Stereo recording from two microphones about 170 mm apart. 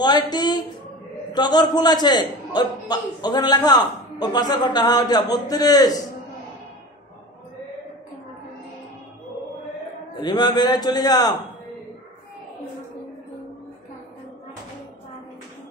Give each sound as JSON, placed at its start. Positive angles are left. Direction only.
{"t": 0.0, "sound": "a man's voice", "side_deg": 25}
{"t": 10.2, "sound": "a man's voice", "side_deg": 25}